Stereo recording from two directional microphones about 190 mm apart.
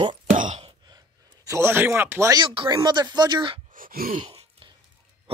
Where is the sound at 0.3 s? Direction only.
40° right (ahead or behind).